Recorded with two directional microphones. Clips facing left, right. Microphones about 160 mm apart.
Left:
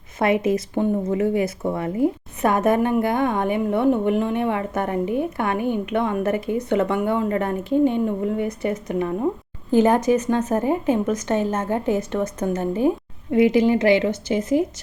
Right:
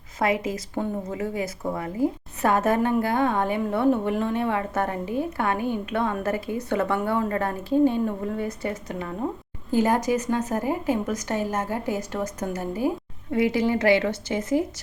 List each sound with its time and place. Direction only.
0.2 s speech: 25° left (ahead or behind)